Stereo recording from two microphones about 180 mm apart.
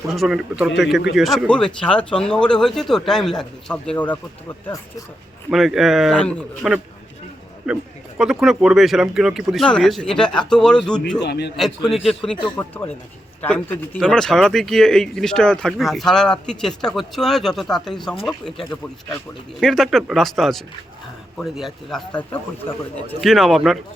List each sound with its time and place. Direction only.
0.1 s speech: centre (ahead or behind)
5.5 s speech: centre (ahead or behind)
11.2 s a man's voice: 70° left (ahead or behind)
12.0 s a man's voice: 5° left (ahead or behind)
19.5 s speech: centre (ahead or behind)
23.2 s speech: centre (ahead or behind)